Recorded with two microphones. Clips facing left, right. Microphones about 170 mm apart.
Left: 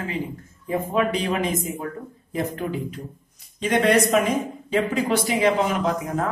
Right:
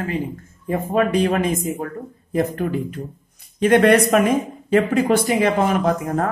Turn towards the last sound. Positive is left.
turn(degrees=-50)  # may be behind; listen again after turning